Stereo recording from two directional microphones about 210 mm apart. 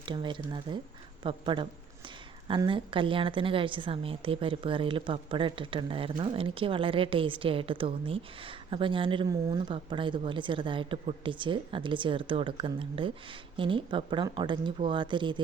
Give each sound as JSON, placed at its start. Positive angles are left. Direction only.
{"t": 0.0, "sound": "a woman's voice", "side_deg": -20}